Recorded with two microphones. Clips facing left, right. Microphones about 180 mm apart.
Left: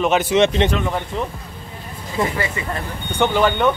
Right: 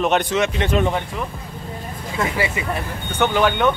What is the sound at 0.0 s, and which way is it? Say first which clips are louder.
Speech: left 1 dB; centre (ahead or behind).